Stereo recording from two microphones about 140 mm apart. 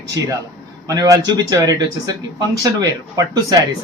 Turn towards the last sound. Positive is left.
turn(degrees=-25)  # may be behind; listen again after turning